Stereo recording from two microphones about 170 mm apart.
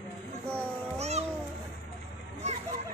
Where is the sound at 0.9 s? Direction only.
40° right (ahead or behind).